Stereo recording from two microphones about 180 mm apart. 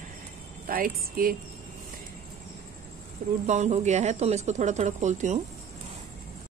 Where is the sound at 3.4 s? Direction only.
40° right (ahead or behind).